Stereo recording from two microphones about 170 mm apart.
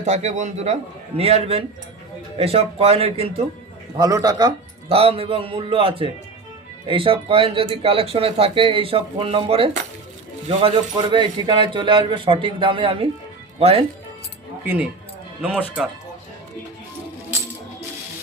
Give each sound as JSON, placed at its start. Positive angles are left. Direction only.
{"t": 0.0, "sound": "speech", "side_deg": -45}
{"t": 3.9, "sound": "speech", "side_deg": -20}
{"t": 14.6, "sound": "speech", "side_deg": -10}